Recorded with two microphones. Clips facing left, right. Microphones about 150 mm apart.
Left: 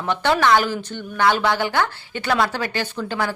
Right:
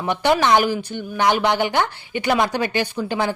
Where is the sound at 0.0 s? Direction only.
15° right (ahead or behind).